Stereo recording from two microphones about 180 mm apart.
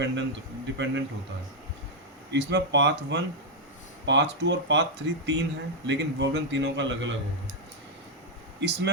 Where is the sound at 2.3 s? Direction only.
75° right (ahead or behind).